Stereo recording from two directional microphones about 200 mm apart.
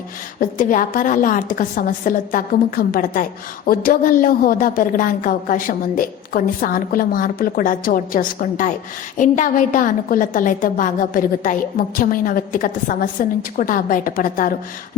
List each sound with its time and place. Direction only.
0.3 s a woman's voice: 40° left (ahead or behind)